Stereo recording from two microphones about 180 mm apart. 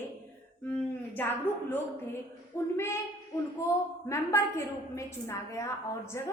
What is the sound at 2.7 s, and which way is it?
Speech, 15° left (ahead or behind).